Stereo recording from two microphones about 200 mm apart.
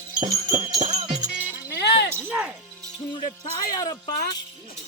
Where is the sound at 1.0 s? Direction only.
20° right (ahead or behind).